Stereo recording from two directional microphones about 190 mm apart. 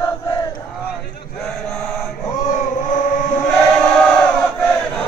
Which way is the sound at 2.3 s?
40° left (ahead or behind).